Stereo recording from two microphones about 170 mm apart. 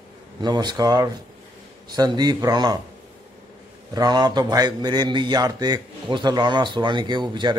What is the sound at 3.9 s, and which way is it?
A man's voice, 25° right (ahead or behind).